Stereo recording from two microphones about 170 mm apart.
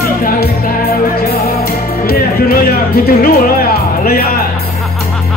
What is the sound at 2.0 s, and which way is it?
Music, 60° left (ahead or behind).